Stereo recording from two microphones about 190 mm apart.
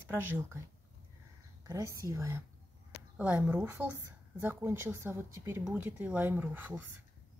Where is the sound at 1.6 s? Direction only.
15° right (ahead or behind).